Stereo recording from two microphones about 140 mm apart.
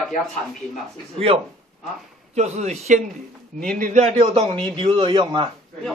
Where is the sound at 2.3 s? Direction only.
50° right (ahead or behind).